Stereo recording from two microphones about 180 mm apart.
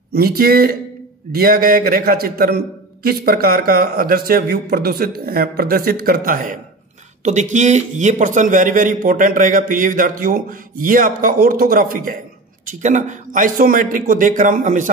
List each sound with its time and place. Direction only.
0.1 s a man's voice: 60° right (ahead or behind)